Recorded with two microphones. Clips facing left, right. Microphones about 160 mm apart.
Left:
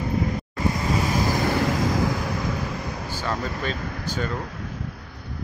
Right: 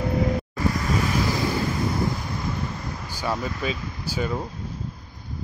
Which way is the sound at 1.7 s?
90° left.